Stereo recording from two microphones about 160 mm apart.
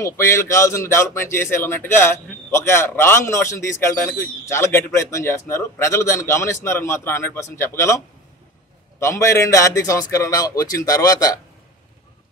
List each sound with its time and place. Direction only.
0.0 s a man's voice: 20° left (ahead or behind)
9.0 s speech: 20° left (ahead or behind)